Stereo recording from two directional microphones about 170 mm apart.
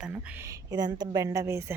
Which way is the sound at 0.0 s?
5° right (ahead or behind).